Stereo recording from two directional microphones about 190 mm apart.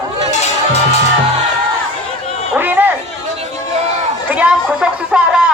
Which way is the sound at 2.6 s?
10° right (ahead or behind).